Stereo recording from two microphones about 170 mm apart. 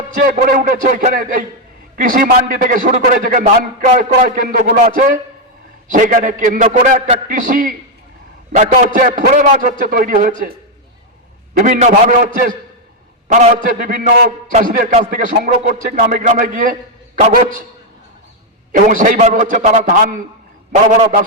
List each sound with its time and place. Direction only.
0.1 s a man's voice: 55° right (ahead or behind)
11.6 s a man's voice: 50° right (ahead or behind)
18.7 s a man's voice: 50° right (ahead or behind)